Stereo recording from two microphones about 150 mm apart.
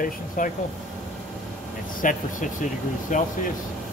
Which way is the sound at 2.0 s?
60° left (ahead or behind).